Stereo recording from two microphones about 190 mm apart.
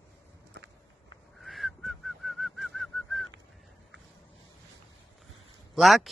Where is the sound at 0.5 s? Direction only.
70° right (ahead or behind).